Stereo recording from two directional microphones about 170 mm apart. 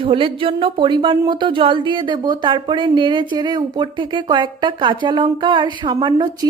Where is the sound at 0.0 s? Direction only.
30° right (ahead or behind).